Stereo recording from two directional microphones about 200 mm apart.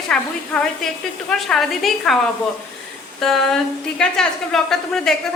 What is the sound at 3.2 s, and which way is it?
A woman's voice, centre (ahead or behind).